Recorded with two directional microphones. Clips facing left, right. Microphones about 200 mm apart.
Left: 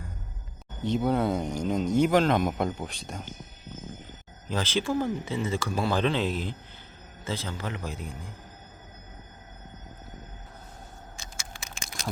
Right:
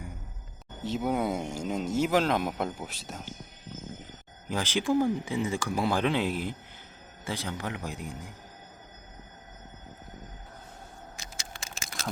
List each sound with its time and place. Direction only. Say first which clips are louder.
0.9 s speech: left 3 dB; 5° right (ahead or behind)
4.4 s speech: even; 15° right (ahead or behind)
11.7 s a sound: left 1 dB; centre (ahead or behind)